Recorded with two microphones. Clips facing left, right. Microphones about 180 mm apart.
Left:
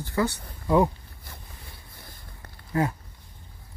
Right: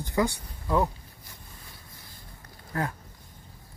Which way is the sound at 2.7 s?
10° left (ahead or behind).